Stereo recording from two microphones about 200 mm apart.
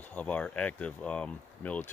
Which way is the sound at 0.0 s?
5° left (ahead or behind).